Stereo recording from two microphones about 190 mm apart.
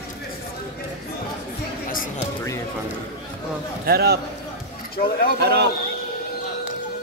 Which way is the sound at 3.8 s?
55° right (ahead or behind).